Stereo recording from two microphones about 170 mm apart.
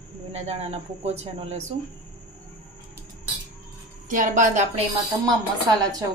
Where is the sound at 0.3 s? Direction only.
35° right (ahead or behind).